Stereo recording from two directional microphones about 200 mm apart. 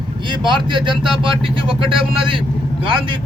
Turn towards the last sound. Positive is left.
turn(degrees=-25)  # may be behind; listen again after turning